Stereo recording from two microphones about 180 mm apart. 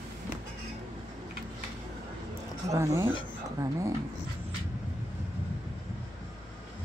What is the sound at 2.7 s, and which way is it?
Speech, 15° right (ahead or behind).